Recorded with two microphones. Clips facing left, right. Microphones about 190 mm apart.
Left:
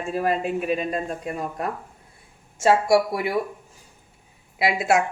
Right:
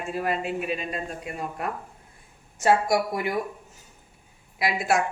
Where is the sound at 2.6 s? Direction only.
25° left (ahead or behind).